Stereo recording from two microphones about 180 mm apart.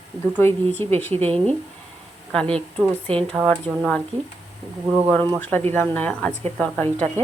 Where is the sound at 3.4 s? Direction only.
5° left (ahead or behind).